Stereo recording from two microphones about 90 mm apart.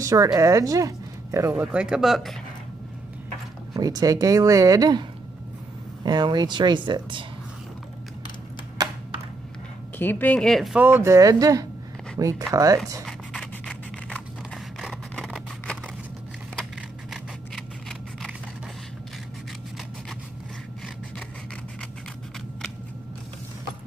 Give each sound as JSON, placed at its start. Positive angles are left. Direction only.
{"t": 0.0, "sound": "speech", "side_deg": -40}
{"t": 1.7, "sound": "speech", "side_deg": -10}
{"t": 3.7, "sound": "speech", "side_deg": -45}
{"t": 6.0, "sound": "speech", "side_deg": -50}
{"t": 9.9, "sound": "speech", "side_deg": 20}
{"t": 10.4, "sound": "speech", "side_deg": 5}
{"t": 10.9, "sound": "speech", "side_deg": -25}
{"t": 11.1, "sound": "speech", "side_deg": -40}
{"t": 13.0, "sound": "a sound", "side_deg": 5}
{"t": 17.1, "sound": "scissors", "side_deg": 0}